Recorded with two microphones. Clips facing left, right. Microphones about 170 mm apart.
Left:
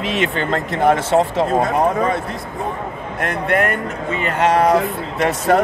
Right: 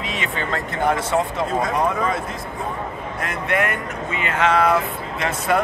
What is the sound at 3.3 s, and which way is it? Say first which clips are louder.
Speech: left 4 dB; 55° left (ahead or behind).